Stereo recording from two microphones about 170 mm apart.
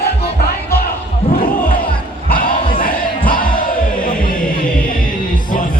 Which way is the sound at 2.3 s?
55° left (ahead or behind).